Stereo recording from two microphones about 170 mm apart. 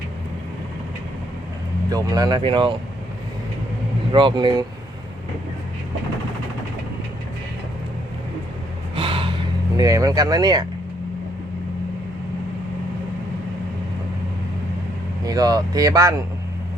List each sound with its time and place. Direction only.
1.9 s speech: 20° right (ahead or behind)
4.1 s speech: 30° right (ahead or behind)
9.0 s a sound: 30° right (ahead or behind)
15.2 s speech: 20° right (ahead or behind)